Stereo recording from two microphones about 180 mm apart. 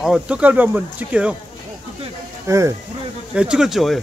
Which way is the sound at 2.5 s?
15° right (ahead or behind).